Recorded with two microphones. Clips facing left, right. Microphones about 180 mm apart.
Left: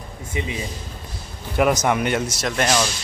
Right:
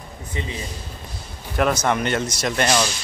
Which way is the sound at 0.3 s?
15° left (ahead or behind).